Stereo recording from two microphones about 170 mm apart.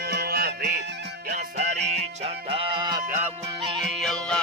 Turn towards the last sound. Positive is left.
turn(degrees=5)  # may be behind; listen again after turning